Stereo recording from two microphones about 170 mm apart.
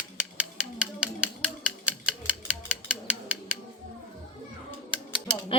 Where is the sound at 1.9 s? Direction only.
5° right (ahead or behind).